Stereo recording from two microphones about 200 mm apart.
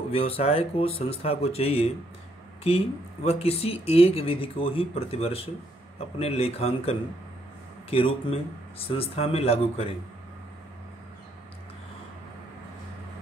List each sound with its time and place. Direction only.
0.1 s speech: 30° left (ahead or behind)